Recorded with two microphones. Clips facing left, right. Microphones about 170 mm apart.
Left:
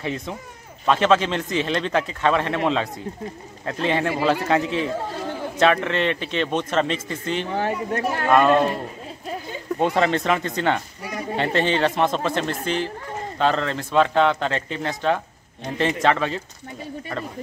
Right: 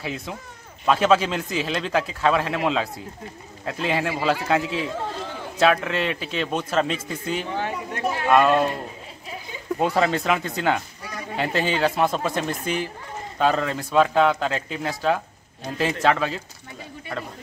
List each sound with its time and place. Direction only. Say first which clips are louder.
0.0 s speech: left 3 dB; 5° right (ahead or behind)
7.5 s speech: left 4 dB; 40° left (ahead or behind)
8.3 s speech: left 1 dB; 5° right (ahead or behind)
9.8 s speech: left 1 dB; 5° right (ahead or behind)